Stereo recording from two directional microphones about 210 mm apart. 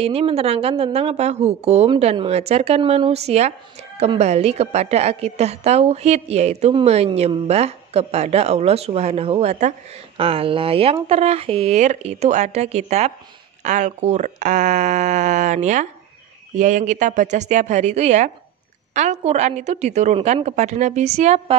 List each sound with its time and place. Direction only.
0.0 s a woman's voice: 30° right (ahead or behind)